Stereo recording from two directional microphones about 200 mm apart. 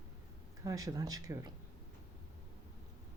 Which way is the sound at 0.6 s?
15° right (ahead or behind).